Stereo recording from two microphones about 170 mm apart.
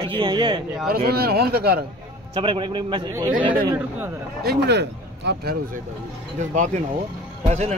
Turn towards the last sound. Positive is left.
turn(degrees=-40)  # may be behind; listen again after turning